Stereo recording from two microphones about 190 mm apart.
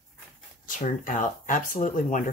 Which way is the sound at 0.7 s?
45° left (ahead or behind).